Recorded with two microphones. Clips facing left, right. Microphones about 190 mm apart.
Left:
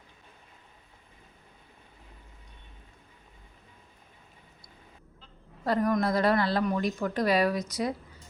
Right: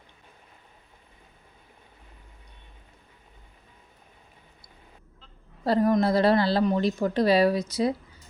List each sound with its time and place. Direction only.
5.6 s a woman's voice: 30° right (ahead or behind)